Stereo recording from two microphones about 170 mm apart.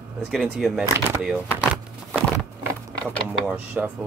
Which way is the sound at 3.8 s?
5° right (ahead or behind).